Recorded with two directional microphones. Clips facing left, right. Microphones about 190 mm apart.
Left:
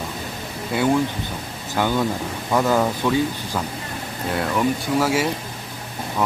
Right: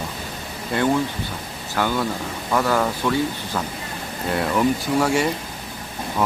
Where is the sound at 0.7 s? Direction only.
5° left (ahead or behind).